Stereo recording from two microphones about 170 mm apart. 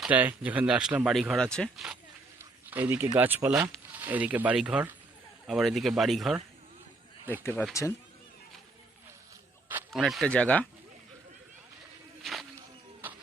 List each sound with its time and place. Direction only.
0.0 s speech: 10° right (ahead or behind)
2.4 s a sound: 10° right (ahead or behind)
3.2 s speech: 10° right (ahead or behind)
7.8 s speech: 20° left (ahead or behind)
9.9 s speech: centre (ahead or behind)
12.2 s a sound: centre (ahead or behind)